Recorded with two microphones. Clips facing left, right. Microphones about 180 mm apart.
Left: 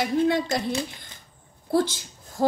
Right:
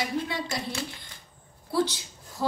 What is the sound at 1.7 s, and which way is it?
Speech, 50° left (ahead or behind).